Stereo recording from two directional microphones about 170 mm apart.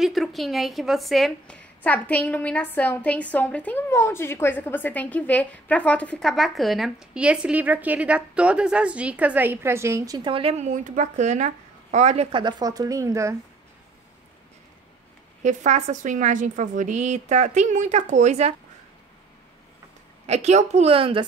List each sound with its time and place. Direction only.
0.0 s a woman's voice: centre (ahead or behind); by 13.4 s 15° right (ahead or behind)
15.4 s a woman's voice: 45° right (ahead or behind)
20.2 s a woman's voice: 40° right (ahead or behind)